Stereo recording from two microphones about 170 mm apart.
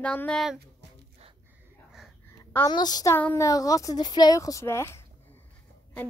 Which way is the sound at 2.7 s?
25° left (ahead or behind).